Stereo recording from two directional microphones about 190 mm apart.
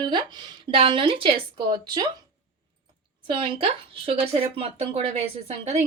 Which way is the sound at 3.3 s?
25° right (ahead or behind).